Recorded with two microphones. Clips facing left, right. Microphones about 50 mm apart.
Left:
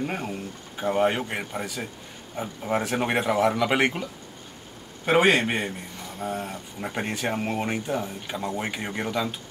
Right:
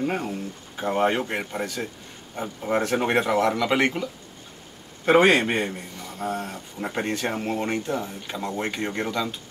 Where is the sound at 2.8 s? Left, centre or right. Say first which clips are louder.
Right 4 dB; centre.